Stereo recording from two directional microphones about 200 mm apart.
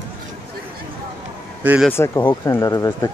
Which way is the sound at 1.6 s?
5° right (ahead or behind).